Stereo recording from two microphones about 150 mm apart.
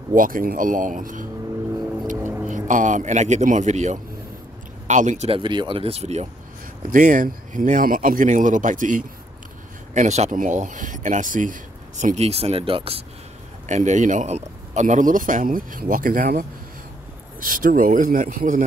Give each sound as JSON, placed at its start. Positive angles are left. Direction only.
{"t": 0.1, "sound": "speech", "side_deg": -65}
{"t": 2.1, "sound": "music", "side_deg": -15}
{"t": 2.4, "sound": "speech", "side_deg": -55}
{"t": 5.4, "sound": "speech", "side_deg": -30}
{"t": 6.9, "sound": "speech", "side_deg": -60}
{"t": 9.9, "sound": "speech", "side_deg": -50}
{"t": 12.0, "sound": "speech", "side_deg": -50}
{"t": 13.7, "sound": "speech", "side_deg": -55}